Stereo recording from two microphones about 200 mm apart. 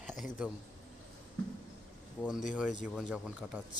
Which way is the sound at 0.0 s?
5° right (ahead or behind).